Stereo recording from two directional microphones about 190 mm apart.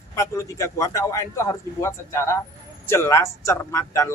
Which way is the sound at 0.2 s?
15° left (ahead or behind).